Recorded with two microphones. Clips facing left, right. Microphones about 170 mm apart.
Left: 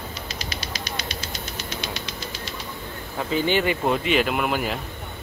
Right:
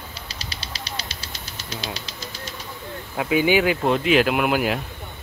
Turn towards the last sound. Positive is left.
turn(degrees=-5)  # may be behind; listen again after turning